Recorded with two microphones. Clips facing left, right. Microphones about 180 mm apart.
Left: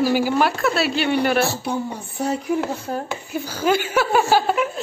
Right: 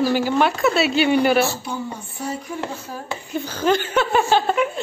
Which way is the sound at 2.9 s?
60° left (ahead or behind).